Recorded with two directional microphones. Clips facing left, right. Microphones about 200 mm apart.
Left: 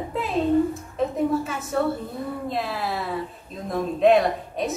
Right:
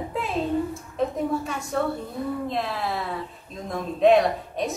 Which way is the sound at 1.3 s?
5° left (ahead or behind).